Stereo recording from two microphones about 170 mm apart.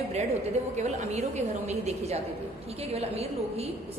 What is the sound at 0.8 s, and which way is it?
A woman's voice, 40° right (ahead or behind).